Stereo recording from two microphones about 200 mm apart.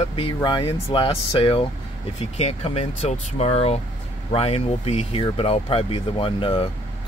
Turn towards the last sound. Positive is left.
turn(degrees=25)  # may be behind; listen again after turning